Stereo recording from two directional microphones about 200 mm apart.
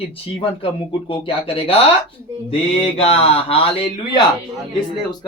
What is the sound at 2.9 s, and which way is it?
Speech, 30° left (ahead or behind).